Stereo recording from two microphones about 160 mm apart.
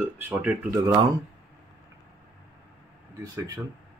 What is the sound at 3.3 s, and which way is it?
Speech, 20° right (ahead or behind).